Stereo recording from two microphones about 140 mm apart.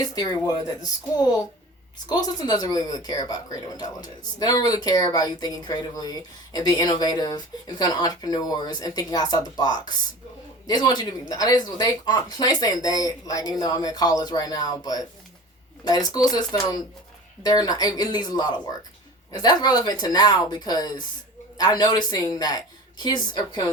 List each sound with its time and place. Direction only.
0.0 s a woman's voice: 30° left (ahead or behind)